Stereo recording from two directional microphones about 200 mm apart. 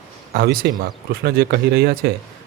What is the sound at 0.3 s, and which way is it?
Speech, 50° right (ahead or behind).